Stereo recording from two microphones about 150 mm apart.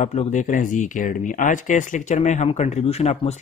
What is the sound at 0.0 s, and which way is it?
Speech, 55° left (ahead or behind).